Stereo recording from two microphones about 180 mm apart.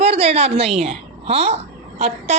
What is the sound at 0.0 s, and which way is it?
A woman's voice, 35° right (ahead or behind).